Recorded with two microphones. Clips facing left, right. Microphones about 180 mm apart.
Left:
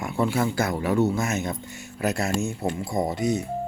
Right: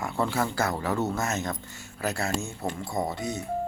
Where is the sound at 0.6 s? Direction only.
15° left (ahead or behind).